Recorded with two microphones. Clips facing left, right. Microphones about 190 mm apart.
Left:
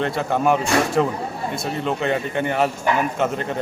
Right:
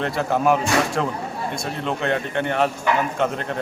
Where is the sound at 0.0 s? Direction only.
Centre (ahead or behind).